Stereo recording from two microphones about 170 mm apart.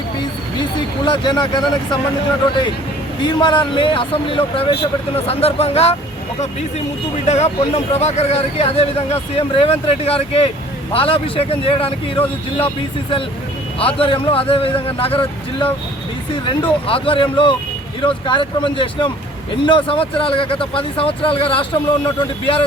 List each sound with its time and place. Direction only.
1.0 s speech: 25° left (ahead or behind)
3.2 s speech: 25° left (ahead or behind)
7.3 s speech: 40° left (ahead or behind)